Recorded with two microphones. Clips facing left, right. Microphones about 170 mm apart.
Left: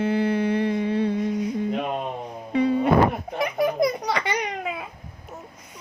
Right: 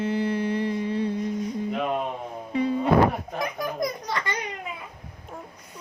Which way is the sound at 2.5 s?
75° left (ahead or behind).